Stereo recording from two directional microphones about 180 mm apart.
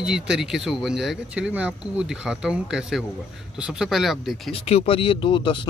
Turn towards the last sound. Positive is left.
turn(degrees=25)  # may be behind; listen again after turning